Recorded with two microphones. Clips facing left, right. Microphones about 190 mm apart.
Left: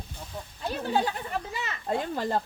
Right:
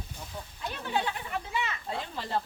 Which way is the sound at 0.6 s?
40° left (ahead or behind).